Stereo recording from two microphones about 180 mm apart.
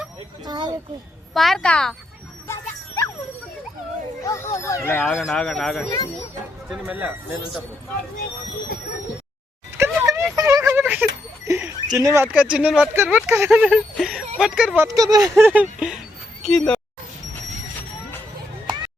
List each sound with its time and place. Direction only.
0.4 s speech: 25° right (ahead or behind)
1.3 s speech: centre (ahead or behind)
2.5 s music: 20° left (ahead or behind)
4.3 s speech: 15° left (ahead or behind)
5.2 s speech: centre (ahead or behind)
9.7 s a sound: 15° right (ahead or behind)
11.4 s speech: 15° right (ahead or behind)
14.8 s speech: 20° right (ahead or behind); by 16.8 s 5° left (ahead or behind)